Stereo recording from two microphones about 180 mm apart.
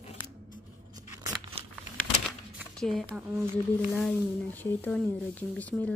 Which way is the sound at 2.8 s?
Centre (ahead or behind).